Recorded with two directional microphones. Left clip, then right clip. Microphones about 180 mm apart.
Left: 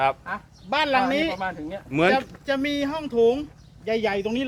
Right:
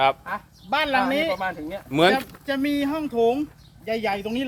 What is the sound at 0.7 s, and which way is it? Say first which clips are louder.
Speech: even; 50° left (ahead or behind).